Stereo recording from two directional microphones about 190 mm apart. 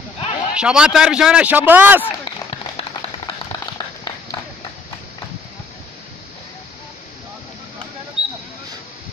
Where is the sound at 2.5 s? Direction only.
30° left (ahead or behind).